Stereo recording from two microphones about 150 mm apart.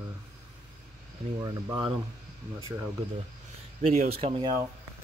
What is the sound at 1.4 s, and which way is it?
Speech, 25° right (ahead or behind).